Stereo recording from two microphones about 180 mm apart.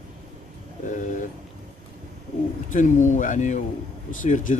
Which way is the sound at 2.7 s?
45° left (ahead or behind).